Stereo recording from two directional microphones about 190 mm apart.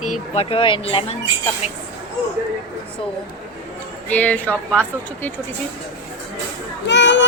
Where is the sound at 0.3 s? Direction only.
30° left (ahead or behind).